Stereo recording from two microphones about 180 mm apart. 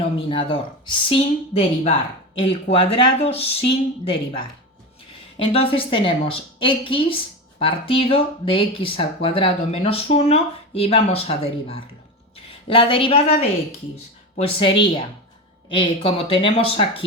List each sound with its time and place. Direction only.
0.2 s a woman's voice: 30° left (ahead or behind)